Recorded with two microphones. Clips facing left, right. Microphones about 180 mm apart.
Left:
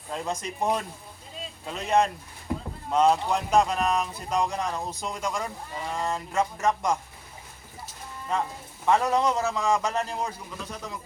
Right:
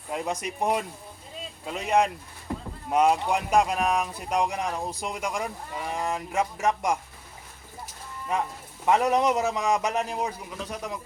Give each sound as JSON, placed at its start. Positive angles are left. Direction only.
{"t": 0.1, "sound": "speech", "side_deg": -15}
{"t": 8.9, "sound": "speech", "side_deg": -15}